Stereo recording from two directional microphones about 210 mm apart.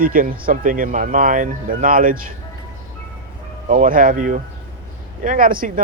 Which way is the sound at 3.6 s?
40° right (ahead or behind).